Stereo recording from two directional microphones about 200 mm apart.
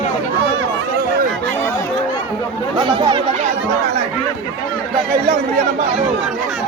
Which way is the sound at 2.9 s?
25° right (ahead or behind).